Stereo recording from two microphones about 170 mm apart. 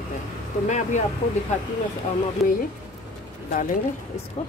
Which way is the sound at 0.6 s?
45° left (ahead or behind).